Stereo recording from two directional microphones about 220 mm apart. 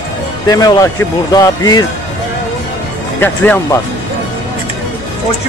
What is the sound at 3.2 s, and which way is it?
Speech, 10° left (ahead or behind).